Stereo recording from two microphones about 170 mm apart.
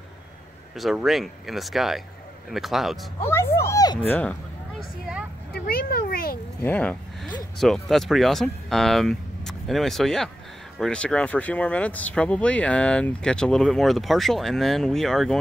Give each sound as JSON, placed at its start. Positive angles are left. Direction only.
{"t": 0.7, "sound": "speech", "side_deg": 0}
{"t": 3.2, "sound": "speech", "side_deg": 15}
{"t": 4.1, "sound": "a sound", "side_deg": 5}
{"t": 5.5, "sound": "a child's voice", "side_deg": 60}
{"t": 6.6, "sound": "speech", "side_deg": 10}